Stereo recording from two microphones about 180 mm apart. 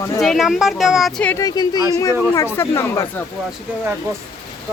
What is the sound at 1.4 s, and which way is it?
Speech, 20° left (ahead or behind).